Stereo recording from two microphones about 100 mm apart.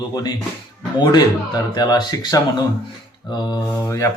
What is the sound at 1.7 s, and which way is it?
Speech, 40° left (ahead or behind).